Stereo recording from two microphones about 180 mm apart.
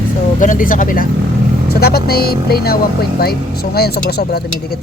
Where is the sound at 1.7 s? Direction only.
60° left (ahead or behind).